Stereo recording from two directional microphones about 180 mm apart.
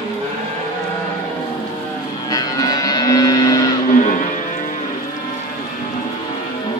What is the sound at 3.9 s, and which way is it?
Music, 45° left (ahead or behind).